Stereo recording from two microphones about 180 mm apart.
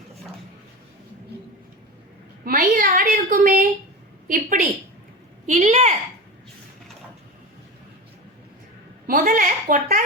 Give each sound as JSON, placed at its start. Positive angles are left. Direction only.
{"t": 2.4, "sound": "a woman's voice", "side_deg": -50}
{"t": 9.0, "sound": "a woman's voice", "side_deg": -50}